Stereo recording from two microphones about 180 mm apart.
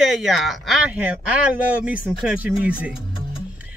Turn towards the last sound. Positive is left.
turn(degrees=-5)  # may be behind; listen again after turning